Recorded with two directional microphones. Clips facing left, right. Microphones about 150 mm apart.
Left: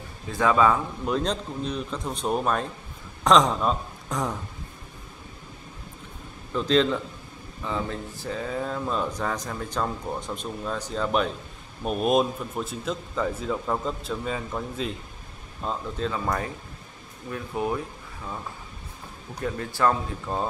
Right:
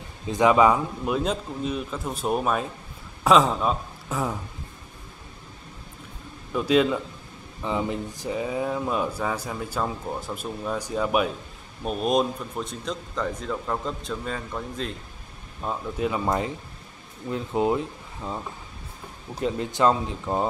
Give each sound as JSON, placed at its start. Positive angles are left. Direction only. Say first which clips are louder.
{"t": 0.3, "sound": "speech", "louder": "right 3 dB", "side_deg": -20}
{"t": 1.0, "sound": "a man's voice", "louder": "left 1 dB", "side_deg": -5}
{"t": 6.5, "sound": "speech", "louder": "right 1 dB", "side_deg": -10}
{"t": 11.8, "sound": "a man's voice", "louder": "left 1 dB", "side_deg": 5}
{"t": 15.6, "sound": "speech", "louder": "right 2 dB", "side_deg": -10}
{"t": 19.4, "sound": "speech", "louder": "right 3 dB", "side_deg": -20}